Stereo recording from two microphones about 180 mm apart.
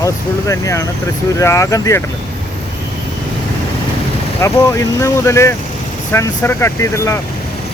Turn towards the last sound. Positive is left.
turn(degrees=15)  # may be behind; listen again after turning